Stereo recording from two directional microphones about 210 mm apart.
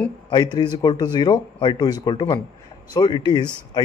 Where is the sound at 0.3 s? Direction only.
20° left (ahead or behind).